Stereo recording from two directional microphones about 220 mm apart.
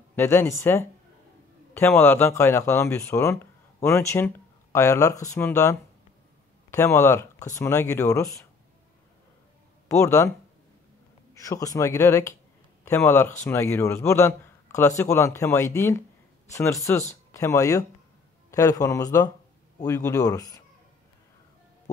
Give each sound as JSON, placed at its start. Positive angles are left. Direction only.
{"t": 0.1, "sound": "a man's voice", "side_deg": 10}
{"t": 9.8, "sound": "a man's voice", "side_deg": 15}
{"t": 11.3, "sound": "a man's voice", "side_deg": 15}